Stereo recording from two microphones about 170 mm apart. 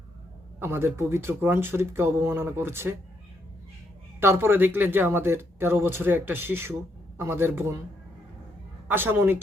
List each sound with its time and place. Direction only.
0.6 s speech: 15° right (ahead or behind)
4.2 s speech: 15° right (ahead or behind)
8.9 s speech: 10° right (ahead or behind)